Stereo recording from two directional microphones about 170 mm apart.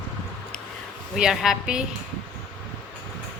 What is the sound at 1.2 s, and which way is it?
Speech, 5° right (ahead or behind).